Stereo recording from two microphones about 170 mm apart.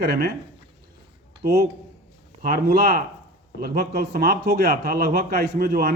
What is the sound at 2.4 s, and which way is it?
Speech, 65° right (ahead or behind).